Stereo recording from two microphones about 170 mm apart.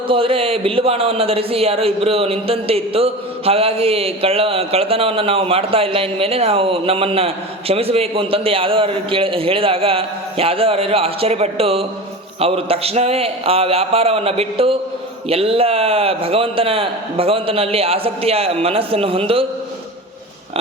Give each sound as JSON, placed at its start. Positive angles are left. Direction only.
{"t": 0.1, "sound": "speech", "side_deg": -30}